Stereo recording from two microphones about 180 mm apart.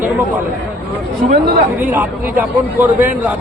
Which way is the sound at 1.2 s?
55° right (ahead or behind).